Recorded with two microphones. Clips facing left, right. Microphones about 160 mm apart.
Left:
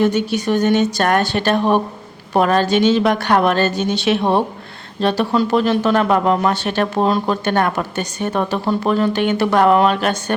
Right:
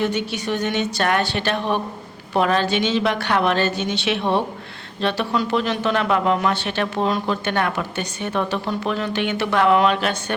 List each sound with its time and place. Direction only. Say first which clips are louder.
0.0 s speech: left 6 dB; 45° left (ahead or behind)